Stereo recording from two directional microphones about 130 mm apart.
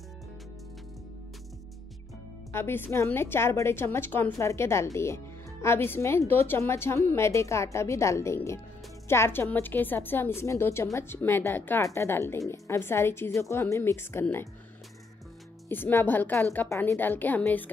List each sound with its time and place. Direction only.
2.5 s a woman's voice: 15° left (ahead or behind)
15.7 s a woman's voice: 15° left (ahead or behind)